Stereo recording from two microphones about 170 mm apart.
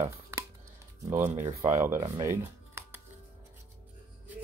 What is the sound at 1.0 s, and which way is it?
Speech, 15° right (ahead or behind).